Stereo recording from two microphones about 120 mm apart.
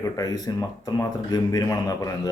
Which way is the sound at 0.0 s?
30° left (ahead or behind).